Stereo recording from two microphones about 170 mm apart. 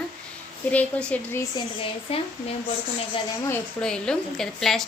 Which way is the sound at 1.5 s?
35° left (ahead or behind).